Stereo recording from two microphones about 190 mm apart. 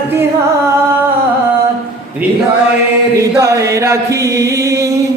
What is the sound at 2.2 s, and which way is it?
Speech, 10° right (ahead or behind).